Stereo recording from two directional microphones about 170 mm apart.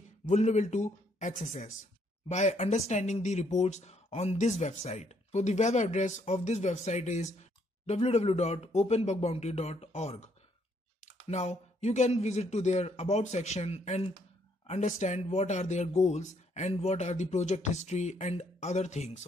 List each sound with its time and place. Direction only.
0.3 s speech: 40° left (ahead or behind)